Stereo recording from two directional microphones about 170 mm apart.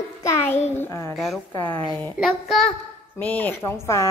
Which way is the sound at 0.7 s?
15° left (ahead or behind).